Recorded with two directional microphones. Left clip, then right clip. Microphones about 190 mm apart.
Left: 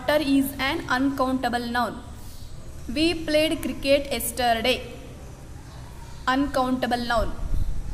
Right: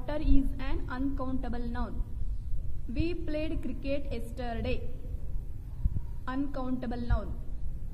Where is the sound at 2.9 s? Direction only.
10° left (ahead or behind).